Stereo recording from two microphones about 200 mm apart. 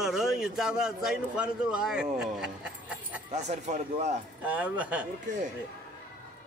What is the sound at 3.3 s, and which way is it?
Speech, 35° right (ahead or behind).